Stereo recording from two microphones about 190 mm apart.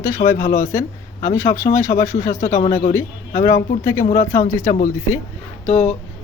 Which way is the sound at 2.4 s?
40° left (ahead or behind).